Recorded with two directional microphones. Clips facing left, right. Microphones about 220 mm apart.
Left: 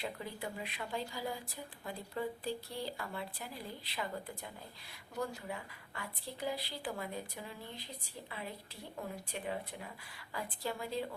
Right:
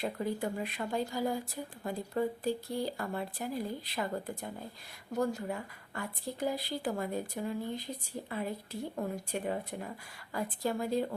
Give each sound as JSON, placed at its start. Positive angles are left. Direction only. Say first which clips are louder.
{"t": 0.0, "sound": "speech", "louder": "right 8 dB", "side_deg": -45}